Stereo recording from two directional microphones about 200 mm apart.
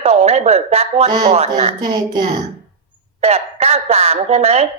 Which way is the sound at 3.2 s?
30° right (ahead or behind).